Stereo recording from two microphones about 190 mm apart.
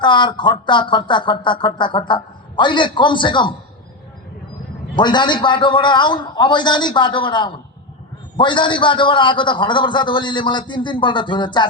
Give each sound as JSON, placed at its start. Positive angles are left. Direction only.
{"t": 0.0, "sound": "speech", "side_deg": 25}
{"t": 4.9, "sound": "speech", "side_deg": 25}